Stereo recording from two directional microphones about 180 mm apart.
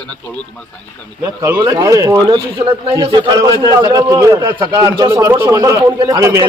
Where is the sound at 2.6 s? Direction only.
30° right (ahead or behind).